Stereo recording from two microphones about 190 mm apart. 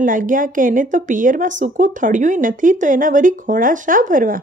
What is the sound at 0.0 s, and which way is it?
Speech, 45° right (ahead or behind).